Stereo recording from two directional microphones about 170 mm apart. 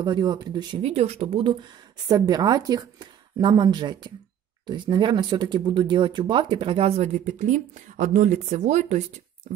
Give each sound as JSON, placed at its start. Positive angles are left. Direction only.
{"t": 0.0, "sound": "a woman's voice", "side_deg": -25}
{"t": 0.8, "sound": "a woman's voice", "side_deg": -40}